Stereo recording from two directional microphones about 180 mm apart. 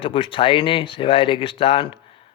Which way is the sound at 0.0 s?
30° left (ahead or behind).